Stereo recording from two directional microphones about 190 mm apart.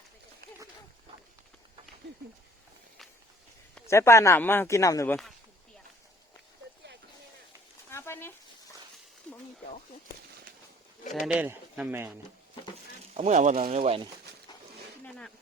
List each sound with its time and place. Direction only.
3.8 s speech: 15° left (ahead or behind)
7.9 s a sound: 15° left (ahead or behind)
11.3 s speech: 10° right (ahead or behind)
13.1 s speech: 40° right (ahead or behind)